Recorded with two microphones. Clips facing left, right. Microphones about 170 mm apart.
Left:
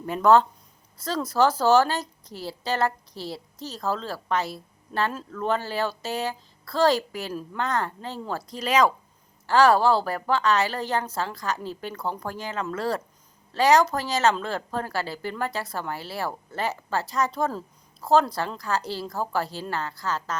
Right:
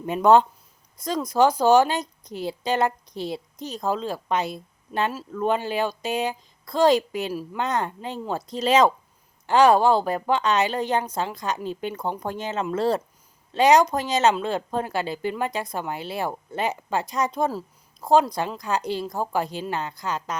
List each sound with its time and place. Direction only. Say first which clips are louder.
0.0 s a woman's voice: right 2 dB; 20° right (ahead or behind)